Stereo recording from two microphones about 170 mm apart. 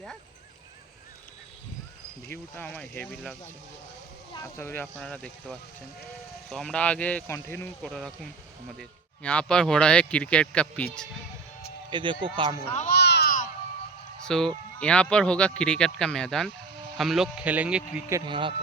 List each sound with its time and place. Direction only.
2.2 s speech: 10° left (ahead or behind)
7.8 s speech: centre (ahead or behind)
11.9 s speech: 25° right (ahead or behind)
12.6 s speech: 40° left (ahead or behind)
12.9 s a sound: 75° left (ahead or behind)
14.3 s a man's voice: 5° left (ahead or behind)
18.3 s speech: 30° right (ahead or behind)